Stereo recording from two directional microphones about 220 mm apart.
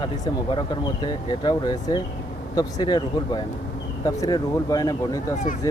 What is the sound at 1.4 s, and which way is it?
Speech, 20° left (ahead or behind).